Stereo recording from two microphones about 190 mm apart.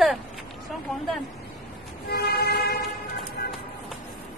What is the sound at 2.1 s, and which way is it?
Vehicle, 55° left (ahead or behind).